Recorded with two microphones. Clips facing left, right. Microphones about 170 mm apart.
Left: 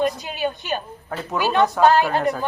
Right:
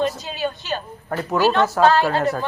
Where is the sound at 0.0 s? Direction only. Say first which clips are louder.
Left 1 dB; 15° left (ahead or behind).